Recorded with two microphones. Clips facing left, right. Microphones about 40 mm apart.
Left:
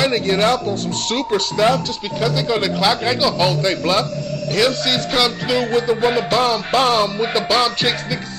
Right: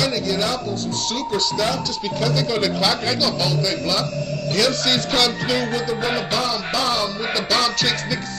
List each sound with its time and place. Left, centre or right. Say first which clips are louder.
0.0 s speech: left 5 dB; left
2.1 s speech: left 3 dB; centre
3.3 s speech: left 4 dB; left
4.5 s speech: left 2 dB; centre
4.9 s music: left 2 dB; centre
5.6 s speech: left 6 dB; left
6.4 s speech: left 6 dB; left
7.3 s speech: left 2 dB; left